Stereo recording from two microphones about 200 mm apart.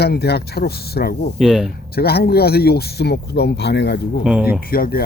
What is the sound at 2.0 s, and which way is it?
Speech, 50° left (ahead or behind).